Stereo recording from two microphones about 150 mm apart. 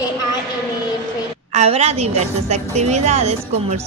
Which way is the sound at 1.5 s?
45° right (ahead or behind).